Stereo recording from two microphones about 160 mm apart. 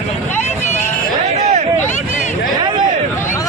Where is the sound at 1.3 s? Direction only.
45° right (ahead or behind).